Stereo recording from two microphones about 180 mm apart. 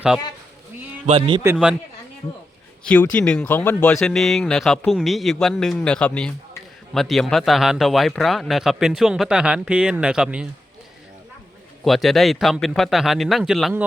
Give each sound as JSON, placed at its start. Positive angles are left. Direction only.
{"t": 1.0, "sound": "speech", "side_deg": -35}
{"t": 2.8, "sound": "speech", "side_deg": 5}
{"t": 11.9, "sound": "speech", "side_deg": 0}